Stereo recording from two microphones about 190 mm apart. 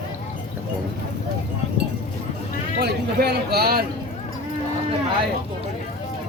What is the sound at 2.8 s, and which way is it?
Speech, 60° right (ahead or behind).